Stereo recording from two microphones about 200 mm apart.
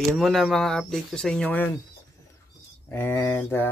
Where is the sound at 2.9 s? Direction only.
10° left (ahead or behind).